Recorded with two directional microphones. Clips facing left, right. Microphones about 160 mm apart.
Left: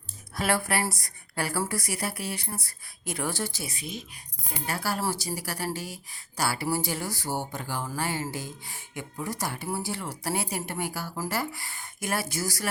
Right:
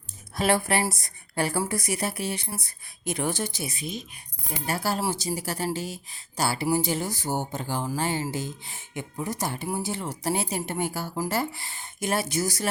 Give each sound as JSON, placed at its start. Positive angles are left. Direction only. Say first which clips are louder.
{"t": 0.3, "sound": "a woman's voice", "louder": "right 3 dB", "side_deg": -20}